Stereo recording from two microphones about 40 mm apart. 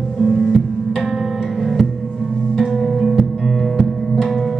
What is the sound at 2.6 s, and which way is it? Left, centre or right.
Music, centre.